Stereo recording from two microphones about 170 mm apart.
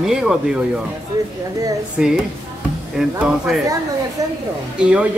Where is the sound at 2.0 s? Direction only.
5° right (ahead or behind).